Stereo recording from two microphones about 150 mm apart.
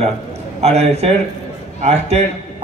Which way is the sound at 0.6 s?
45° right (ahead or behind).